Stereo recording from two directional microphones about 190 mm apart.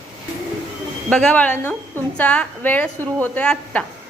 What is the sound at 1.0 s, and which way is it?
A woman's voice, 5° left (ahead or behind).